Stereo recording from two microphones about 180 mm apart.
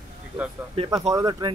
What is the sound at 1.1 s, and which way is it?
Speech, 20° right (ahead or behind).